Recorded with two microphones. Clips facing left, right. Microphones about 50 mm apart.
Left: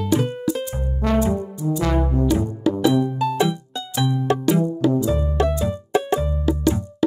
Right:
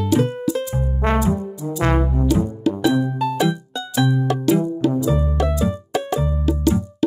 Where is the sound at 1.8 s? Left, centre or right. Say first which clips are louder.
Right 3 dB; right.